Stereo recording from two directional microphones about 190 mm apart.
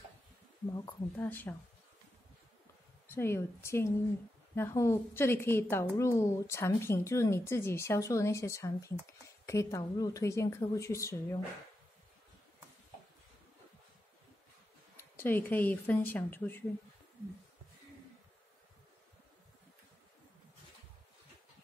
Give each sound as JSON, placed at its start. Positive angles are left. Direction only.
{"t": 0.7, "sound": "speech", "side_deg": 10}
{"t": 3.1, "sound": "speech", "side_deg": 15}
{"t": 15.0, "sound": "speech", "side_deg": 10}